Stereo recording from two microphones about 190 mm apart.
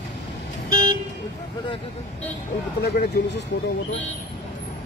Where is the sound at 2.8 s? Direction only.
60° left (ahead or behind).